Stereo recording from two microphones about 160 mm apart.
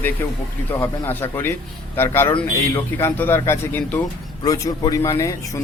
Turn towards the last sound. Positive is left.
turn(degrees=20)  # may be behind; listen again after turning